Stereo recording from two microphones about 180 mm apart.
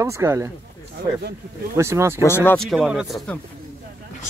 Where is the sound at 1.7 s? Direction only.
15° right (ahead or behind).